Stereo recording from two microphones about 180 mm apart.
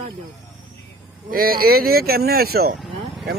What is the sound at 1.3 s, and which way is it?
Speech, 55° right (ahead or behind).